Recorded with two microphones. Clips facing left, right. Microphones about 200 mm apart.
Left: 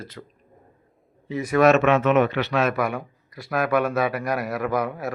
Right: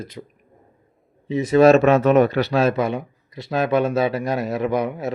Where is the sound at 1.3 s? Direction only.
20° right (ahead or behind).